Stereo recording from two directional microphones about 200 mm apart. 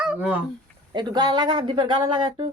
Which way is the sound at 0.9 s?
20° right (ahead or behind).